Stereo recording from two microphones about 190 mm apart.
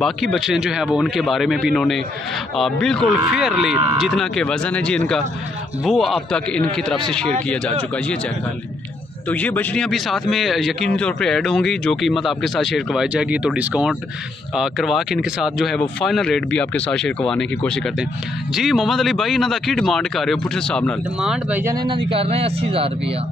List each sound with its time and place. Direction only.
0.0 s speech: centre (ahead or behind)
9.3 s speech: 10° left (ahead or behind); by 21.7 s 10° right (ahead or behind)
21.7 s speech: 25° right (ahead or behind)